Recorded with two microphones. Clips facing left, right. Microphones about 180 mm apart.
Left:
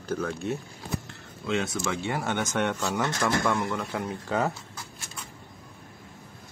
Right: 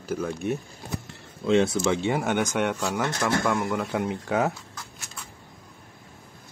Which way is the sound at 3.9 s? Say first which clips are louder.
Right 4 dB; 20° right (ahead or behind).